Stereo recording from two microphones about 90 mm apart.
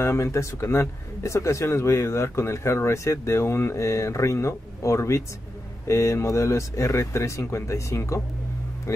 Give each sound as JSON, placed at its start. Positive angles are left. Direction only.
{"t": 0.0, "sound": "speech", "side_deg": 30}